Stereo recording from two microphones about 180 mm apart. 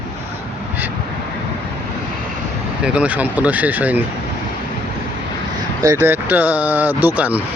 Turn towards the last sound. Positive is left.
turn(degrees=-10)  # may be behind; listen again after turning